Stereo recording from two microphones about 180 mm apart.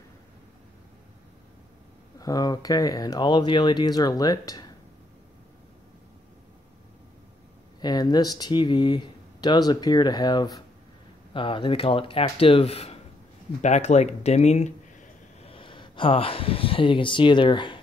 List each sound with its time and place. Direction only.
2.1 s speech: 20° left (ahead or behind)
7.8 s speech: 20° left (ahead or behind)